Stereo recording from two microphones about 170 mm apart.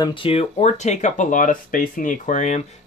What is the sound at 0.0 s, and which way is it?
Speech, 30° left (ahead or behind).